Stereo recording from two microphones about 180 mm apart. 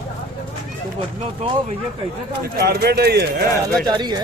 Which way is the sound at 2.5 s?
60° right (ahead or behind).